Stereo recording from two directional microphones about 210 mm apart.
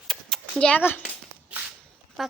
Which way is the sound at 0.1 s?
5° left (ahead or behind).